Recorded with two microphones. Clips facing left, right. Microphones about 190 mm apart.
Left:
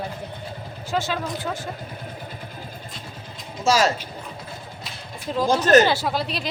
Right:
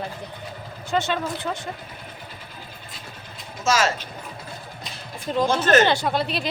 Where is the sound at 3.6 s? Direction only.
35° left (ahead or behind).